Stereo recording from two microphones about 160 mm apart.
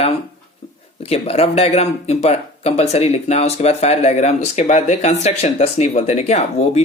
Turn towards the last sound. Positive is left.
turn(degrees=45)  # may be behind; listen again after turning